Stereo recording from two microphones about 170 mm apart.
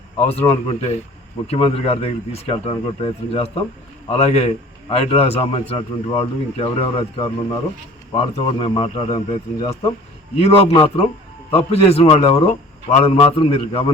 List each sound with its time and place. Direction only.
0.2 s a man's voice: 35° left (ahead or behind)
10.8 s a man's voice: 35° left (ahead or behind)